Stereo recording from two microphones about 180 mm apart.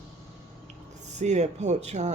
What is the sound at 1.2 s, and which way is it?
Speech, 40° right (ahead or behind).